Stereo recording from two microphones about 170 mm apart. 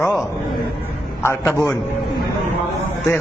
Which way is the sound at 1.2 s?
15° left (ahead or behind).